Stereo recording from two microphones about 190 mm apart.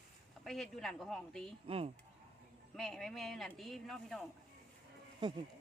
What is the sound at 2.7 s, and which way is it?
Speech, centre (ahead or behind).